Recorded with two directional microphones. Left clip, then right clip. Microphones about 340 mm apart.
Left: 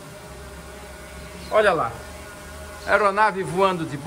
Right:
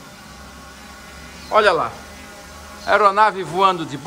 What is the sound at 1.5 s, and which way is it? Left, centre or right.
Speech, centre.